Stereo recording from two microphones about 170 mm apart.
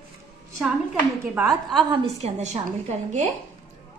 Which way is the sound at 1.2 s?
5° right (ahead or behind).